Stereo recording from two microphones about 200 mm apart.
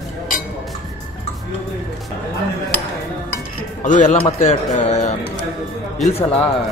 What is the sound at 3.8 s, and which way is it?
A man's voice, 40° left (ahead or behind).